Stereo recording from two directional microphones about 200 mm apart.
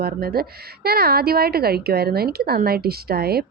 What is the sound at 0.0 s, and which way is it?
A woman's voice, 50° right (ahead or behind).